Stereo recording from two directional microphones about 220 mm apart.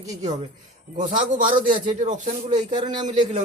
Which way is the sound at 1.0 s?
35° right (ahead or behind).